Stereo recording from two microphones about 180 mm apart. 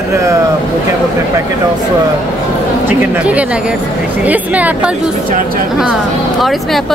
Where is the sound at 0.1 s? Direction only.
15° right (ahead or behind).